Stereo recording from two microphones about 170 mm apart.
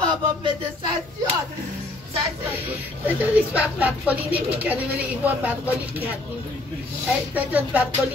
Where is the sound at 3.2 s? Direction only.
10° right (ahead or behind).